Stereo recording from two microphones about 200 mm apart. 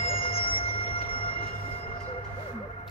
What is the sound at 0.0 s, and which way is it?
Music, 30° left (ahead or behind).